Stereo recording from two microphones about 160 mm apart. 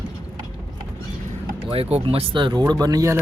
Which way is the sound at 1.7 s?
35° right (ahead or behind).